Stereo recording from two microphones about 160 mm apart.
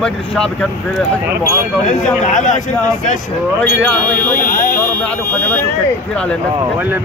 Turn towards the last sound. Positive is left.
turn(degrees=10)  # may be behind; listen again after turning